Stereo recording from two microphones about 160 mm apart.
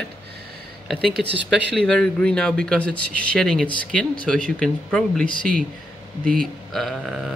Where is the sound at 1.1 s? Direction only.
90° right.